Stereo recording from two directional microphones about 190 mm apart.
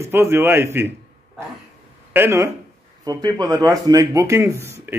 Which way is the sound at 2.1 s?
15° right (ahead or behind).